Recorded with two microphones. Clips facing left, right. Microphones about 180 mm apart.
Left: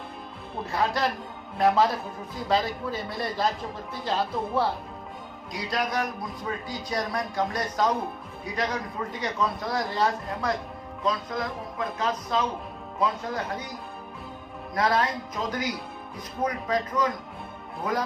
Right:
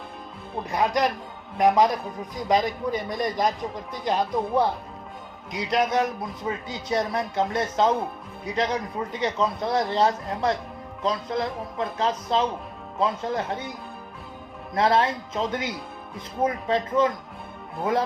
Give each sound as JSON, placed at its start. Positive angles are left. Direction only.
{"t": 0.6, "sound": "a man's voice", "side_deg": -15}
{"t": 14.8, "sound": "speech", "side_deg": -25}